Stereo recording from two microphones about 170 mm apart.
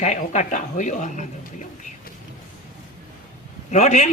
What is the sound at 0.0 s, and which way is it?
Speech, 45° left (ahead or behind).